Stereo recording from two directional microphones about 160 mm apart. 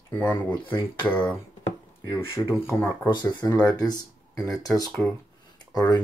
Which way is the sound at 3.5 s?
5° left (ahead or behind).